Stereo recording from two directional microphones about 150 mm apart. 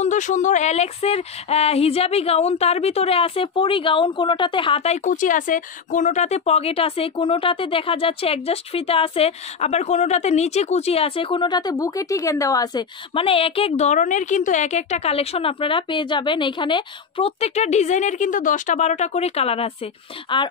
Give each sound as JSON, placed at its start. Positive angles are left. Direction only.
{"t": 0.0, "sound": "speech", "side_deg": 55}
{"t": 13.1, "sound": "speech", "side_deg": 40}
{"t": 17.4, "sound": "speech", "side_deg": 50}